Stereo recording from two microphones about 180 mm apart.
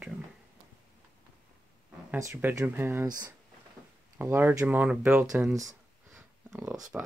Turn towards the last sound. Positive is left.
turn(degrees=-5)  # may be behind; listen again after turning